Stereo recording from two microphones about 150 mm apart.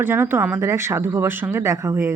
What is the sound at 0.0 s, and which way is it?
Speech, 15° right (ahead or behind).